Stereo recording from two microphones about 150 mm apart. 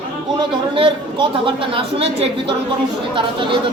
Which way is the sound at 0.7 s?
35° right (ahead or behind).